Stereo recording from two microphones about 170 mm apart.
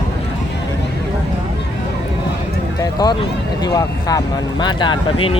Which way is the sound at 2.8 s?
20° left (ahead or behind).